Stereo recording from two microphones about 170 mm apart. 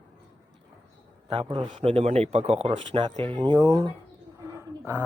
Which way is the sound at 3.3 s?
25° right (ahead or behind).